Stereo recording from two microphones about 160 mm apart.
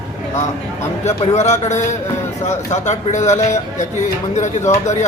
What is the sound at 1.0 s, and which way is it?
Speech, 45° left (ahead or behind).